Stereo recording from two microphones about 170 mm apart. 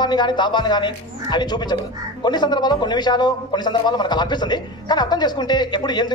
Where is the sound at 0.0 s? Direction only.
25° left (ahead or behind).